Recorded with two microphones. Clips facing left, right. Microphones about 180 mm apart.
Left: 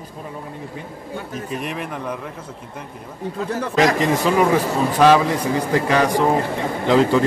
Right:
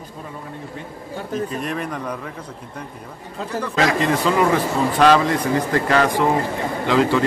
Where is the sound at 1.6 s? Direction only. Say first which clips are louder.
Right 1 dB; 5° left (ahead or behind).